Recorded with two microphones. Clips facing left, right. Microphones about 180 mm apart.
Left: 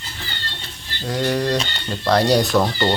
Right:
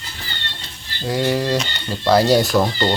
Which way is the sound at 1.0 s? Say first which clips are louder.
Right 1 dB; 5° right (ahead or behind).